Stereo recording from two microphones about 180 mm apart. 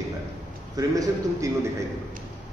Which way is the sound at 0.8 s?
20° right (ahead or behind).